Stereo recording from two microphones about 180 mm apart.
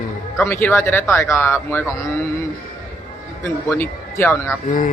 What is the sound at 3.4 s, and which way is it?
A man's voice, 15° left (ahead or behind).